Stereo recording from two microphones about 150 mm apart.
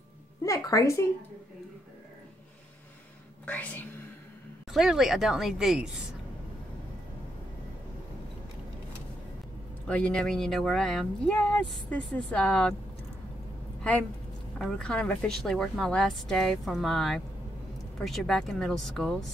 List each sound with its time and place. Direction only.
0.5 s speech: 20° left (ahead or behind)
3.4 s speech: 10° left (ahead or behind)
4.6 s speech: centre (ahead or behind)
9.8 s speech: 5° left (ahead or behind)
13.9 s speech: 10° left (ahead or behind)